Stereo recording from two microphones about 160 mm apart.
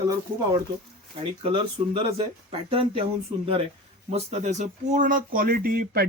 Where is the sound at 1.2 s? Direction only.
35° right (ahead or behind).